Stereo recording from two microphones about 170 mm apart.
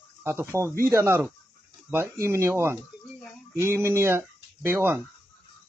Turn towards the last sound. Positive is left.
turn(degrees=-15)  # may be behind; listen again after turning